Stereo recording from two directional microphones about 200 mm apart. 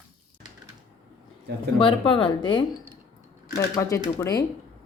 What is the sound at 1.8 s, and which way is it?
Speech, 25° left (ahead or behind).